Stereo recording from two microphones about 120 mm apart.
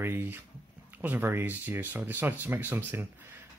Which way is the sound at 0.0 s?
20° right (ahead or behind).